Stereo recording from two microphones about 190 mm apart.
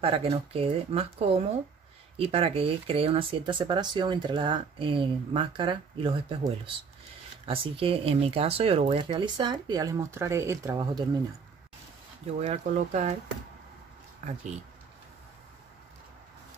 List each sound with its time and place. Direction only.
0.0 s speech: 30° right (ahead or behind)
12.4 s speech: 35° right (ahead or behind)